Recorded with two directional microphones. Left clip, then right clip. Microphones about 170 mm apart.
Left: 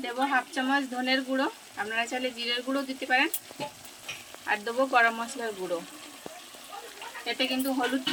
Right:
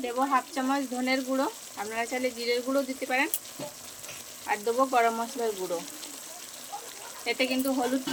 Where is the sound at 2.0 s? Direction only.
25° right (ahead or behind).